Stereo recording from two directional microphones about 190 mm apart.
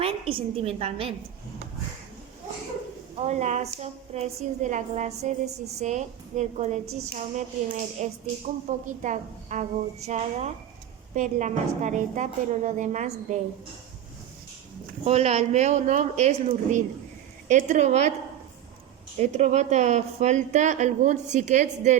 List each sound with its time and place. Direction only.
0.0 s a woman's voice: 30° right (ahead or behind)
3.2 s a woman's voice: 35° right (ahead or behind)
15.0 s a woman's voice: 35° right (ahead or behind)
19.2 s a woman's voice: 35° right (ahead or behind)